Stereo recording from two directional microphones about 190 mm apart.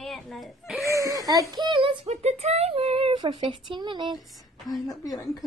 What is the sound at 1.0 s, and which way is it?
Speech, 20° right (ahead or behind).